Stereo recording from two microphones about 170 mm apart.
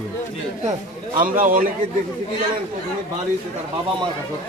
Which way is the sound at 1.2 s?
55° right (ahead or behind).